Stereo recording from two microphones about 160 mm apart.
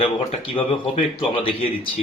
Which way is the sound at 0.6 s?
35° left (ahead or behind).